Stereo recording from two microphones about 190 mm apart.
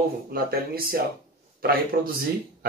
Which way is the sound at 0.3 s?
50° right (ahead or behind).